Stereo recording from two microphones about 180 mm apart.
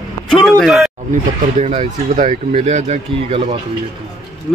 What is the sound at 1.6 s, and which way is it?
Speech, 35° right (ahead or behind).